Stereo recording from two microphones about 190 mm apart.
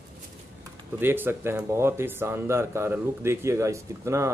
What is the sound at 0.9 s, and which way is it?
Speech, 10° right (ahead or behind).